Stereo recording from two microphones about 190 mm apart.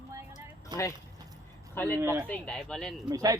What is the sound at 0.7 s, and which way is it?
Speech, 20° right (ahead or behind).